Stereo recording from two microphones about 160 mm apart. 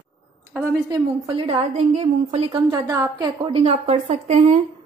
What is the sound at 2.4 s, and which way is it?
A woman's voice, 25° right (ahead or behind).